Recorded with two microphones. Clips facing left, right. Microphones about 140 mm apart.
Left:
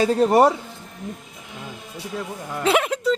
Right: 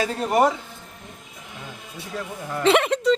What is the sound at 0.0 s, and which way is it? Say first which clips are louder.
Speech: left 4 dB; 30° left (ahead or behind).